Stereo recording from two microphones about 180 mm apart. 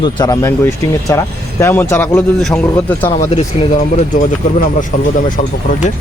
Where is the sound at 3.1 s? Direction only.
40° left (ahead or behind).